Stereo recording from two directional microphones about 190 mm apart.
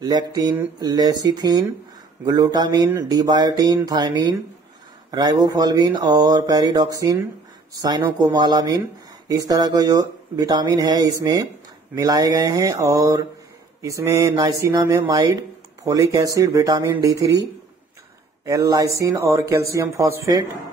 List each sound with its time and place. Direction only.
0.0 s speech: 20° right (ahead or behind)
18.4 s speech: 15° right (ahead or behind)